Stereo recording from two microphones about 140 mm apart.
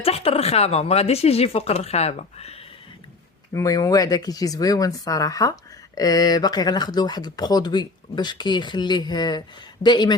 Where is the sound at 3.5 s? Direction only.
25° left (ahead or behind).